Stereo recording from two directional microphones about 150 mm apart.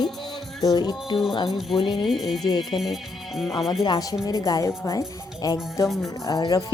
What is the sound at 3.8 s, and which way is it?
A woman's voice, 30° left (ahead or behind).